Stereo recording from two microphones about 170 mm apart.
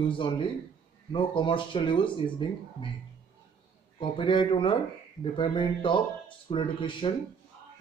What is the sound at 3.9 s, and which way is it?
Speech, 30° left (ahead or behind).